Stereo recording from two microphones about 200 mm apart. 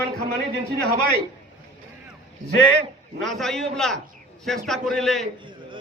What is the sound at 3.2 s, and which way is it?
A man's voice, centre (ahead or behind).